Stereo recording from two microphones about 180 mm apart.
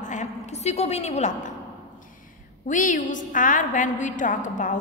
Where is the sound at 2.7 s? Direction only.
45° left (ahead or behind).